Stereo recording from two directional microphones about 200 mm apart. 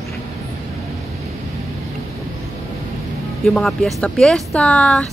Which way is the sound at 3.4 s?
Centre (ahead or behind).